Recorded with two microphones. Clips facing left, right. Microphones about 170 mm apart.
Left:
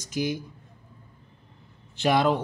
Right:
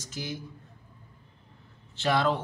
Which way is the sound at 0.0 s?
15° left (ahead or behind).